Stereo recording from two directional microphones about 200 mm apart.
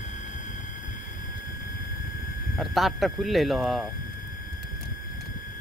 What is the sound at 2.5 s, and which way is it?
Speech, centre (ahead or behind).